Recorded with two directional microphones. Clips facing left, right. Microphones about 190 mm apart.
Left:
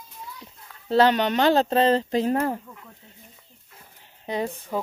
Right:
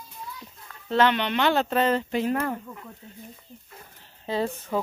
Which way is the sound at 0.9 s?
35° left (ahead or behind).